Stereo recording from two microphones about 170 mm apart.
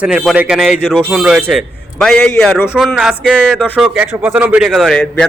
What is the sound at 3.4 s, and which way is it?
Speech, 10° left (ahead or behind).